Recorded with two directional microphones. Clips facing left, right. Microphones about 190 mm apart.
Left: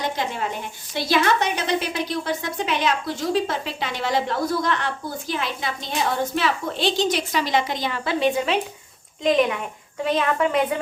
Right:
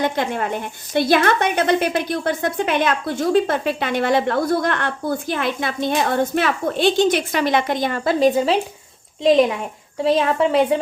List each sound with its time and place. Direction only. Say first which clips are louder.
0.0 s a woman's voice: right 5 dB; 55° right (ahead or behind); by 10.8 s 30° right (ahead or behind)